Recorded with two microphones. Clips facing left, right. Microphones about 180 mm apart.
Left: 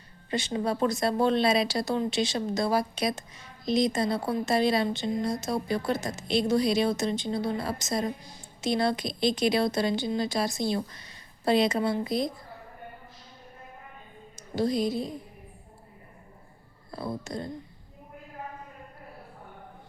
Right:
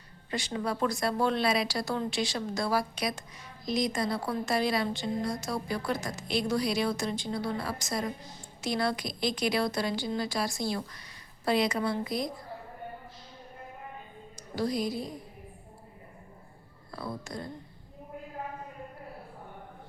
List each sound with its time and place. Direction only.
0.3 s a woman's voice: 25° left (ahead or behind)
14.5 s a woman's voice: 25° left (ahead or behind)
16.9 s a woman's voice: 25° left (ahead or behind)